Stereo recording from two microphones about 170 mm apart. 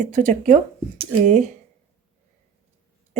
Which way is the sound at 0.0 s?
50° right (ahead or behind).